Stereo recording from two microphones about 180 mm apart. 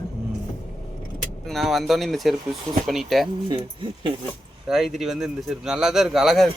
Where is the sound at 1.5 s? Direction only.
Centre (ahead or behind).